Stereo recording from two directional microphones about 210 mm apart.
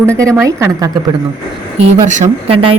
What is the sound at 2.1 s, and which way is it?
Speech, 30° right (ahead or behind).